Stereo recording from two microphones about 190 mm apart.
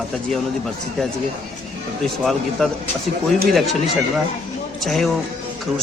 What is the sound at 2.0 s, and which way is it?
Speech, centre (ahead or behind).